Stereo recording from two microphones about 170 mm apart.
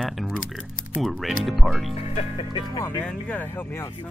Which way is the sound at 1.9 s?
35° left (ahead or behind).